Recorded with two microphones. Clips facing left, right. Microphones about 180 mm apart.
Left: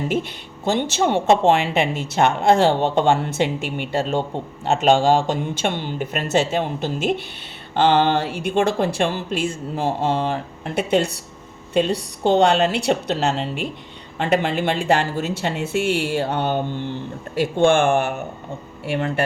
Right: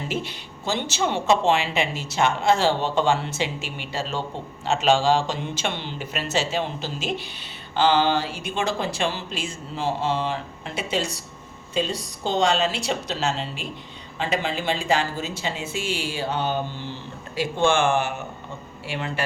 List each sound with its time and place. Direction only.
0.1 s speech: 55° left (ahead or behind)